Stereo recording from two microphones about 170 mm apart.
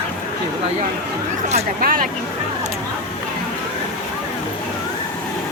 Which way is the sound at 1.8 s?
55° right (ahead or behind).